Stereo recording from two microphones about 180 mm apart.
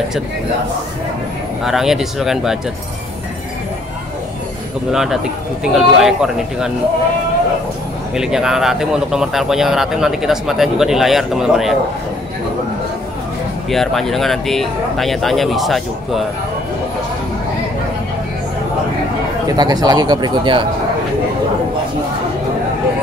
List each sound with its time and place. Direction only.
1.6 s a man's voice: centre (ahead or behind)
4.9 s a man's voice: 5° right (ahead or behind)
8.1 s a man's voice: 5° right (ahead or behind)
13.7 s a man's voice: centre (ahead or behind)
19.4 s speech: 20° right (ahead or behind)